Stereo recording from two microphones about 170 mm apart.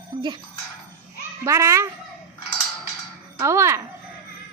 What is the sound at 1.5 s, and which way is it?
Speech, 15° right (ahead or behind).